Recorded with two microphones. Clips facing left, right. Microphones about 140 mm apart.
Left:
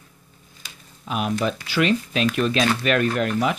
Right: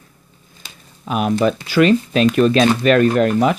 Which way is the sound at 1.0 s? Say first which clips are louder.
Right 7 dB; 50° right (ahead or behind).